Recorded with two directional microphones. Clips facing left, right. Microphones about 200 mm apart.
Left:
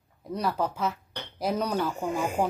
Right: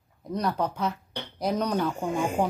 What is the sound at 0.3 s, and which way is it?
Speech, 5° left (ahead or behind).